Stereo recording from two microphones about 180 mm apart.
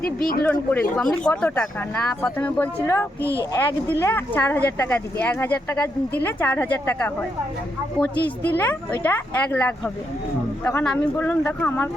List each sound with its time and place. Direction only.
0.0 s speech: 55° left (ahead or behind)
0.4 s speech: 10° left (ahead or behind)
8.5 s speech: 10° left (ahead or behind)